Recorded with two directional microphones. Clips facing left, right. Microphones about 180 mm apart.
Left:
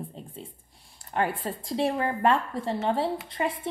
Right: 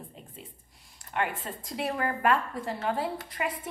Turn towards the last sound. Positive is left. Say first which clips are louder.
# left 4 dB
turn(degrees=25)  # may be behind; listen again after turning